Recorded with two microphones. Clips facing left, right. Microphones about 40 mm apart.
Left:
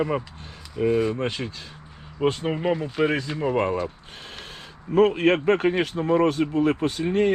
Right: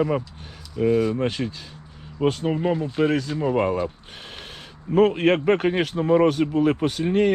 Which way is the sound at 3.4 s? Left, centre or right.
Centre.